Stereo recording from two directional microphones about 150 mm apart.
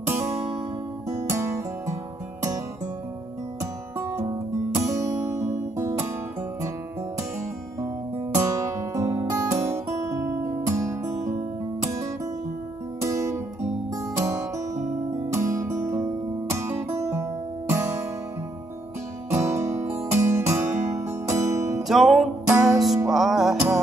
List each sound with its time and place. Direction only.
0.0 s music: 15° right (ahead or behind)
4.7 s music: 20° right (ahead or behind)
8.4 s music: 20° right (ahead or behind)
13.0 s music: 20° right (ahead or behind)
19.3 s music: 20° right (ahead or behind)
21.8 s music: centre (ahead or behind)
22.5 s music: 20° right (ahead or behind)
23.0 s music: centre (ahead or behind)